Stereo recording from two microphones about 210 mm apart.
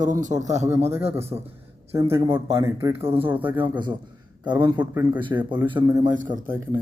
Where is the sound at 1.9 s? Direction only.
10° right (ahead or behind).